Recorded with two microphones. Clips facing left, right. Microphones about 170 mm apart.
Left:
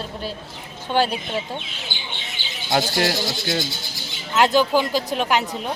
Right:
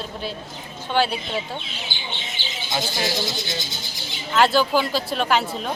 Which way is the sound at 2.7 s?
65° left (ahead or behind).